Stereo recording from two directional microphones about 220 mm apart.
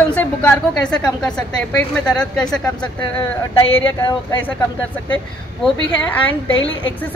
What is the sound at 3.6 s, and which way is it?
Speech, 25° left (ahead or behind).